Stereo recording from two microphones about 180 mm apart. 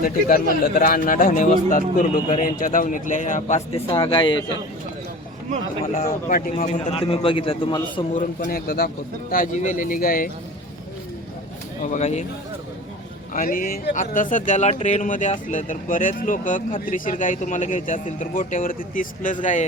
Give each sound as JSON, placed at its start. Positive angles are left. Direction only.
{"t": 0.0, "sound": "speech", "side_deg": 55}
{"t": 3.8, "sound": "speech", "side_deg": 30}
{"t": 6.0, "sound": "a man's voice", "side_deg": 45}
{"t": 8.1, "sound": "a man's voice", "side_deg": 50}
{"t": 9.3, "sound": "speech", "side_deg": 45}
{"t": 11.8, "sound": "a man's voice", "side_deg": 40}
{"t": 13.3, "sound": "speech", "side_deg": 50}